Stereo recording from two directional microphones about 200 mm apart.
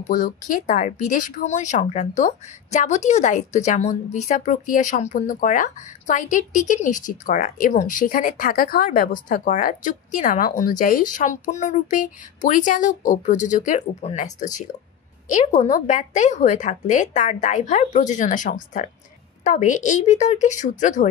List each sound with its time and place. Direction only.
0.0 s speech: 40° left (ahead or behind)